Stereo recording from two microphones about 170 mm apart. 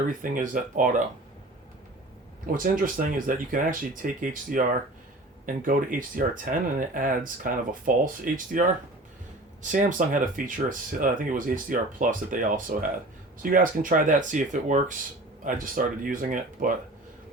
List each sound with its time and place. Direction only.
0.2 s speech: 50° right (ahead or behind)
2.6 s speech: 55° right (ahead or behind)
5.6 s speech: 50° right (ahead or behind)